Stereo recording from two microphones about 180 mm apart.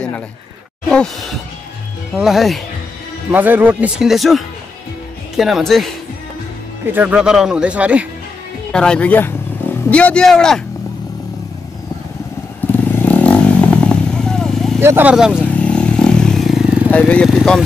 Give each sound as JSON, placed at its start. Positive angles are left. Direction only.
{"t": 0.8, "sound": "speech", "side_deg": 5}
{"t": 5.4, "sound": "speech", "side_deg": 0}
{"t": 6.9, "sound": "speech", "side_deg": -10}
{"t": 8.7, "sound": "speech", "side_deg": 5}
{"t": 12.8, "sound": "motorcycle", "side_deg": 10}
{"t": 13.8, "sound": "vehicle", "side_deg": 5}
{"t": 14.8, "sound": "speech", "side_deg": -10}
{"t": 15.3, "sound": "vehicle", "side_deg": 5}